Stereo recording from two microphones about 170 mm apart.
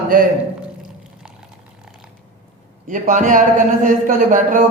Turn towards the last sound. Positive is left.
turn(degrees=-50)  # may be behind; listen again after turning